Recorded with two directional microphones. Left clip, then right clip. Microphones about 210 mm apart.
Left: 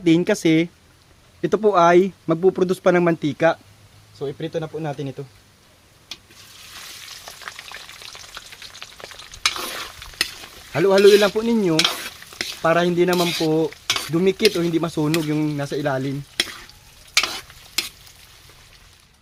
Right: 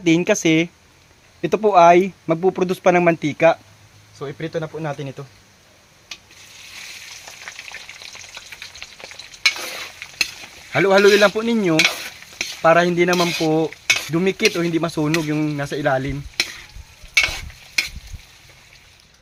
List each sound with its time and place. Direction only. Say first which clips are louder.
0.0 s speech: right 1 dB; 20° left (ahead or behind)
10.7 s stir: even; 10° left (ahead or behind)
13.6 s speech: right 3 dB; 5° left (ahead or behind); by 15.1 s 20° left (ahead or behind)
15.3 s stir: right 1 dB; 20° left (ahead or behind)